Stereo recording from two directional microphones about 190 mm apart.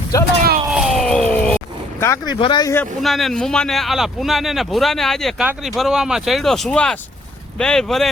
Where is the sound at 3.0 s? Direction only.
Centre (ahead or behind).